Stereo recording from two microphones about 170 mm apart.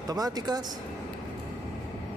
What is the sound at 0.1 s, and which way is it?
Speech, 25° right (ahead or behind).